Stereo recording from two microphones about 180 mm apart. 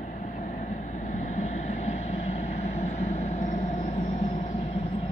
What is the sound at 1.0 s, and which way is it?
Vehicle, 45° left (ahead or behind).